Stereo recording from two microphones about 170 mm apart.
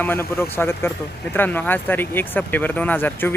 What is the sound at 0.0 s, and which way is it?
Speech, 10° left (ahead or behind).